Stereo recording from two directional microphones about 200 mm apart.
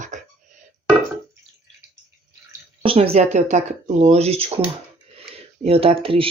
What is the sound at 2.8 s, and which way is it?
Speech, 30° right (ahead or behind).